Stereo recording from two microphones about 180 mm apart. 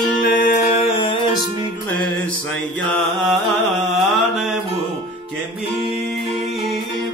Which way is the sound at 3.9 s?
Centre (ahead or behind).